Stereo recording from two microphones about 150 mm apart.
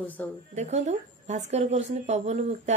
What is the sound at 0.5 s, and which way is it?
A woman's voice, 50° right (ahead or behind).